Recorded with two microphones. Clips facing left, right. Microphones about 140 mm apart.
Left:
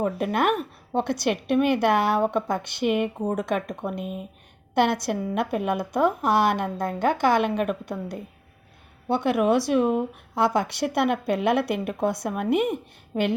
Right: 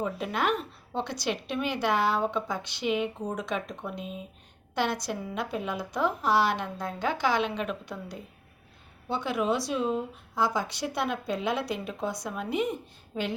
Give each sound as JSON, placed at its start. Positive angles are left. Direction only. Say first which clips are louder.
{"t": 0.0, "sound": "a woman's voice", "louder": "left 6 dB", "side_deg": 55}
{"t": 9.0, "sound": "a woman's voice", "louder": "left 7 dB", "side_deg": 60}